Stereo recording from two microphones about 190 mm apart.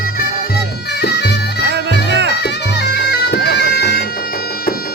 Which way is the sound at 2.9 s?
60° left (ahead or behind).